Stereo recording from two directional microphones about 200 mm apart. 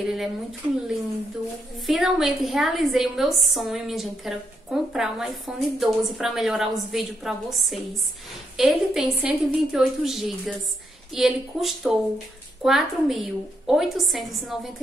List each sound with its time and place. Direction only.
0.0 s a woman's voice: centre (ahead or behind)
1.9 s a woman's voice: centre (ahead or behind)